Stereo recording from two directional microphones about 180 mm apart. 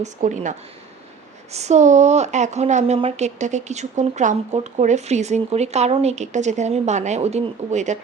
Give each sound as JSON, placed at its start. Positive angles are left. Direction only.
{"t": 0.0, "sound": "speech", "side_deg": -40}
{"t": 1.5, "sound": "speech", "side_deg": -40}